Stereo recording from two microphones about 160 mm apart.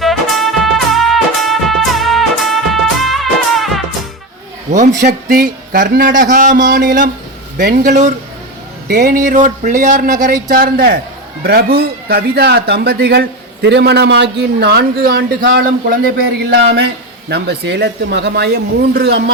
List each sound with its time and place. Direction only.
0.0 s music: centre (ahead or behind)
4.7 s a man's voice: 50° right (ahead or behind)
5.0 s speech: 65° right (ahead or behind)
7.6 s speech: 70° right (ahead or behind)
11.4 s speech: 80° right